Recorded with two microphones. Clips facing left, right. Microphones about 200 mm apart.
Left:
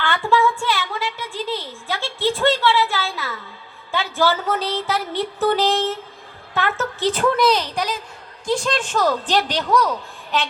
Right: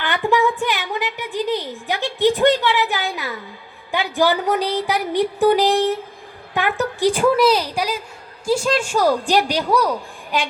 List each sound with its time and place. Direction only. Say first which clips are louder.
0.0 s a woman's voice: right 1 dB; 15° right (ahead or behind)